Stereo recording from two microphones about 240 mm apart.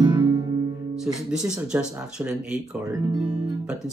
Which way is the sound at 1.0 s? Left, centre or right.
Centre.